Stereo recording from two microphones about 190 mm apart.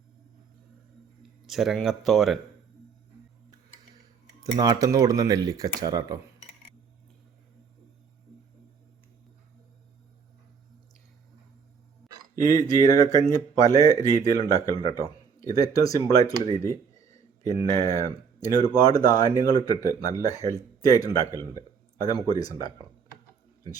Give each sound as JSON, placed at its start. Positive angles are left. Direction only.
{"t": 1.5, "sound": "speech", "side_deg": 0}
{"t": 4.5, "sound": "speech", "side_deg": -20}
{"t": 12.0, "sound": "a sound", "side_deg": 0}
{"t": 12.4, "sound": "speech", "side_deg": 20}